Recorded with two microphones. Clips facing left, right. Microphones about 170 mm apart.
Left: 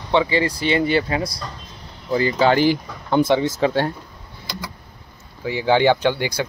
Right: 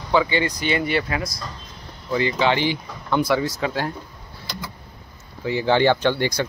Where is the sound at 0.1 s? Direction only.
30° left (ahead or behind).